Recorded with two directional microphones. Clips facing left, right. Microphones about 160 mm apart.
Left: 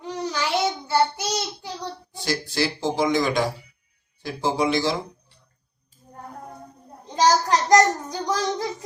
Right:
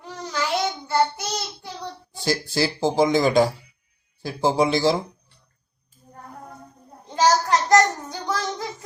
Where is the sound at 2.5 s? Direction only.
30° right (ahead or behind).